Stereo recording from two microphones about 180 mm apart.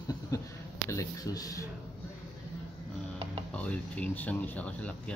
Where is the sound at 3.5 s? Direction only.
5° left (ahead or behind).